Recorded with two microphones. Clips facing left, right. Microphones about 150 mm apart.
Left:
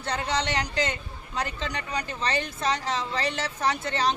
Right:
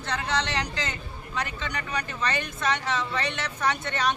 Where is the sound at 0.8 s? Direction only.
35° left (ahead or behind).